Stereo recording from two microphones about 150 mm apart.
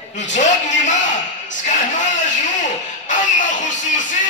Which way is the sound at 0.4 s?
55° left (ahead or behind).